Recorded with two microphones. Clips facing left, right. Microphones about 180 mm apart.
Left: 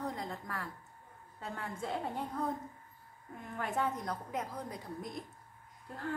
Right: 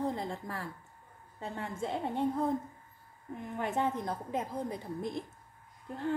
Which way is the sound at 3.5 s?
25° right (ahead or behind).